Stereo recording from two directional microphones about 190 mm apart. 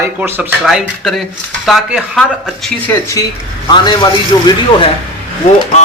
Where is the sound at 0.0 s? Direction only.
10° right (ahead or behind).